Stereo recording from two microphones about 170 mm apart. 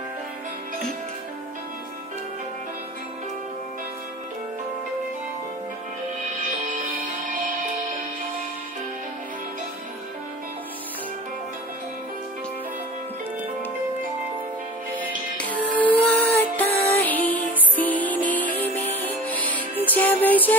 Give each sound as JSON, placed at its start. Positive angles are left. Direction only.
{"t": 6.7, "sound": "music", "side_deg": -55}
{"t": 15.5, "sound": "music", "side_deg": 10}